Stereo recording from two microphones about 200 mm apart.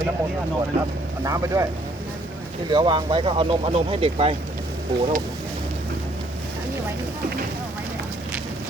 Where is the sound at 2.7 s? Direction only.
25° right (ahead or behind).